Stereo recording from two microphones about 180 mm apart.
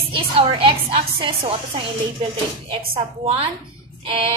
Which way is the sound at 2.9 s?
30° right (ahead or behind).